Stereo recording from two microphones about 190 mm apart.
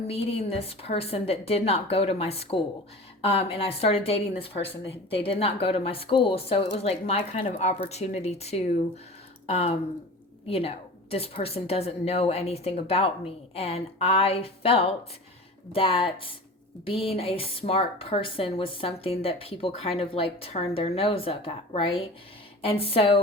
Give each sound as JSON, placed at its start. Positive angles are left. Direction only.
{"t": 0.8, "sound": "speech", "side_deg": 30}